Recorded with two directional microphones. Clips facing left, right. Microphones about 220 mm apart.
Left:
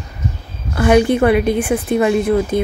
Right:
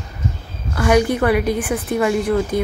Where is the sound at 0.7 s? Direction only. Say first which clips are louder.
Left 4 dB; 25° left (ahead or behind).